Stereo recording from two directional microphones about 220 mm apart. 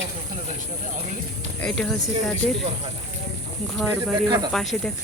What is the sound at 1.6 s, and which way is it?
Speech, 5° left (ahead or behind).